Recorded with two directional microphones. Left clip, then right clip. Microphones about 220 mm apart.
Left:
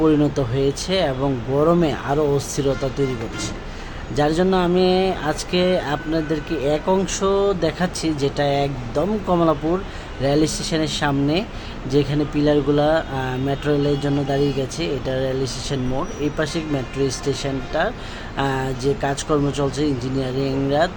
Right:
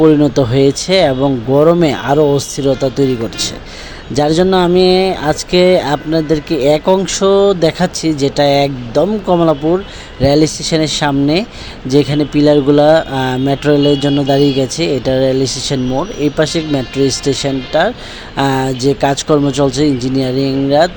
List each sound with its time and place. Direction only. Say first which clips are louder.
0.0 s speech: right 9 dB; 25° right (ahead or behind)
4.1 s speech: right 7 dB; 25° right (ahead or behind)